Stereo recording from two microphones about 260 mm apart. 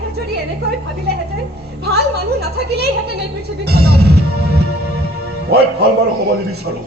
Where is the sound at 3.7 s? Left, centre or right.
Right.